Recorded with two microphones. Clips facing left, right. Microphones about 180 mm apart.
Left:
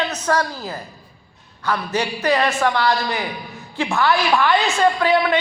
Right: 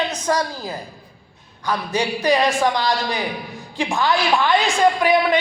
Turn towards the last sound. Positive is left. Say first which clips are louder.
# right 1 dB
turn(degrees=-15)  # may be behind; listen again after turning